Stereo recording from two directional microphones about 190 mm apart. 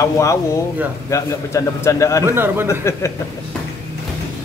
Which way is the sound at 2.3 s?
10° right (ahead or behind).